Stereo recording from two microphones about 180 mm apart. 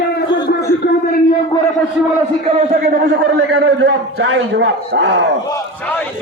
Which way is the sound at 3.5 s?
75° right (ahead or behind).